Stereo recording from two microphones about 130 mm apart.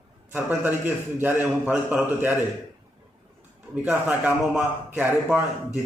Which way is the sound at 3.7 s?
10° right (ahead or behind).